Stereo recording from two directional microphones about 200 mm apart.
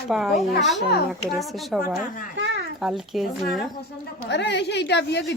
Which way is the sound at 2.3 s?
60° right (ahead or behind).